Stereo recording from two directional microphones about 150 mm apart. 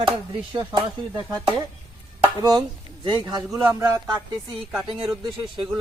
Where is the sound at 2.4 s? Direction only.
25° right (ahead or behind).